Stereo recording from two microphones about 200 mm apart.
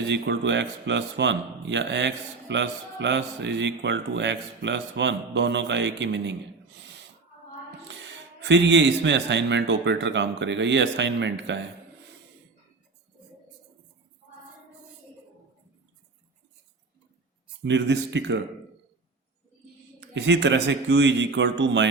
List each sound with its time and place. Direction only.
0.1 s a man's voice: 65° right (ahead or behind)
8.4 s a man's voice: 65° right (ahead or behind)
17.6 s a man's voice: 65° right (ahead or behind)
20.0 s a man's voice: 65° right (ahead or behind)